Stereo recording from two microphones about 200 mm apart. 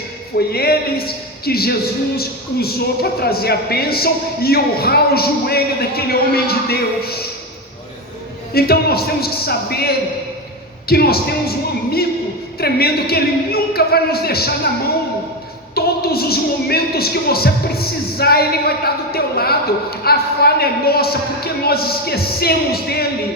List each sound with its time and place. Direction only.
0.3 s a woman's voice: 50° left (ahead or behind)
8.5 s a woman's voice: 50° left (ahead or behind)
15.7 s a sound: 50° left (ahead or behind)
20.1 s a man's voice: 50° left (ahead or behind)